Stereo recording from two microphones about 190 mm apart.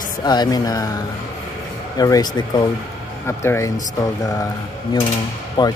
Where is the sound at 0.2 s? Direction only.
20° left (ahead or behind).